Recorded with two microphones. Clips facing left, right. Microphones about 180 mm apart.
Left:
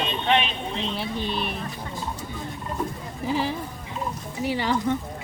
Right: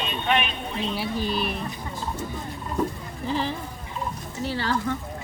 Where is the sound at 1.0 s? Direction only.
5° right (ahead or behind).